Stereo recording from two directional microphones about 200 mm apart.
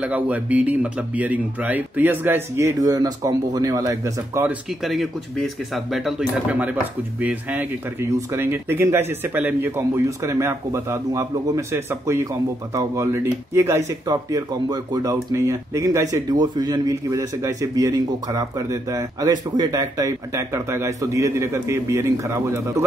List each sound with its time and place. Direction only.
0.0 s a man's voice: 5° right (ahead or behind)